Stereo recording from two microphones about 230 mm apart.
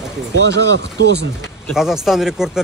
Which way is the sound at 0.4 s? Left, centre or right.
Right.